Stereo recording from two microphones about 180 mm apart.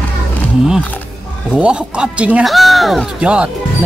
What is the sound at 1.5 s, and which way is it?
Speech, 5° right (ahead or behind).